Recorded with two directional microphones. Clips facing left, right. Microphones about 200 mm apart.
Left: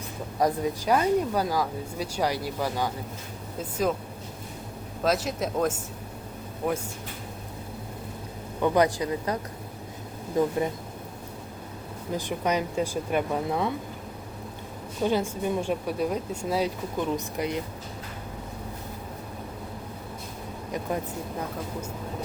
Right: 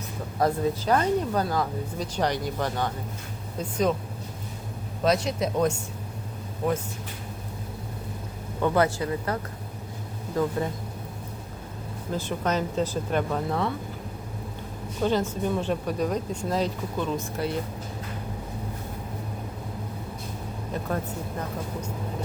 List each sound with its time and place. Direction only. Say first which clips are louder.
0.3 s a man's voice: right 1 dB; 15° left (ahead or behind)
5.0 s a man's voice: right 2 dB; centre (ahead or behind)
8.6 s speech: left 1 dB; 15° left (ahead or behind)
12.1 s speech: even; 15° left (ahead or behind)
15.0 s speech: right 1 dB; 10° left (ahead or behind)
20.7 s speech: even; 10° left (ahead or behind)